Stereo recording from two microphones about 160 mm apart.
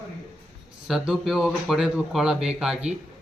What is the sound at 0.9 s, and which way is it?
Speech, centre (ahead or behind).